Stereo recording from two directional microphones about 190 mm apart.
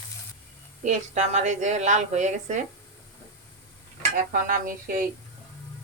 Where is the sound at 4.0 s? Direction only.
45° right (ahead or behind).